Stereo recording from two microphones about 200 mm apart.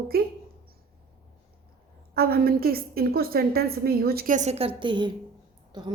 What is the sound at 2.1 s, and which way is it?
A woman's voice, 50° right (ahead or behind).